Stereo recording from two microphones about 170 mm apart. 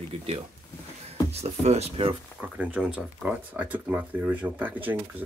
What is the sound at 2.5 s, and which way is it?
Speech, 10° right (ahead or behind).